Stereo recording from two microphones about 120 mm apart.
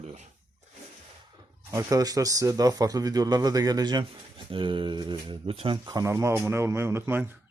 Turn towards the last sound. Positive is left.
turn(degrees=-20)  # may be behind; listen again after turning